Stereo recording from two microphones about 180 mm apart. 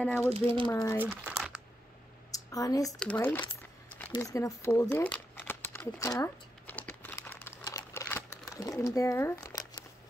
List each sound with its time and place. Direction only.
0.0 s speech: 10° left (ahead or behind)
0.9 s speech: 10° right (ahead or behind)
2.3 s a sound: 20° left (ahead or behind)
2.9 s speech: 5° left (ahead or behind)
5.9 s crumpling: 20° left (ahead or behind)